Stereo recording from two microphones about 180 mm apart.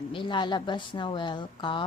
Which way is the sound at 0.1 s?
25° left (ahead or behind).